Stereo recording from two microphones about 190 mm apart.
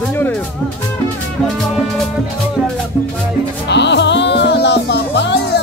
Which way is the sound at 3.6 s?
65° left (ahead or behind).